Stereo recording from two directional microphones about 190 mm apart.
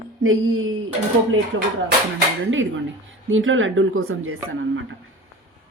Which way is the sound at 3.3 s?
90° right.